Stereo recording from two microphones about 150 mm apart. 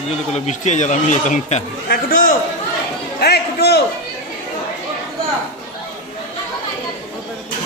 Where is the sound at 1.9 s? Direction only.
70° left (ahead or behind).